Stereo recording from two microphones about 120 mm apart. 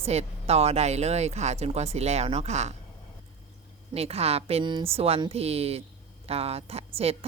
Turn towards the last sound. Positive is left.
turn(degrees=-55)  # may be behind; listen again after turning